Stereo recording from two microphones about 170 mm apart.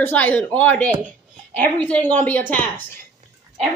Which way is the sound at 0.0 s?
10° left (ahead or behind).